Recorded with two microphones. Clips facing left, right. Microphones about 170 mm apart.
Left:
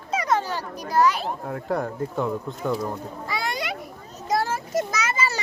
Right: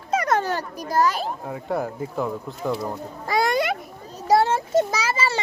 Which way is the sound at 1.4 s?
5° right (ahead or behind).